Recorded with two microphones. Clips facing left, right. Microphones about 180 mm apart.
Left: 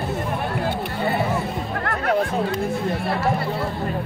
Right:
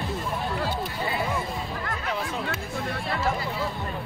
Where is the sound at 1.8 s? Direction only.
60° left (ahead or behind).